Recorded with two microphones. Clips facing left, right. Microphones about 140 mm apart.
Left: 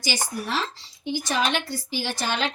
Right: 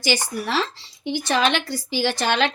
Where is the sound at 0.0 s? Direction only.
75° right (ahead or behind).